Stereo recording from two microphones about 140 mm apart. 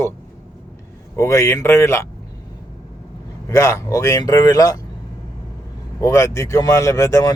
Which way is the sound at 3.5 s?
20° left (ahead or behind).